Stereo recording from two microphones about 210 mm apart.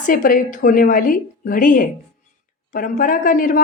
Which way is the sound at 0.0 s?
40° left (ahead or behind).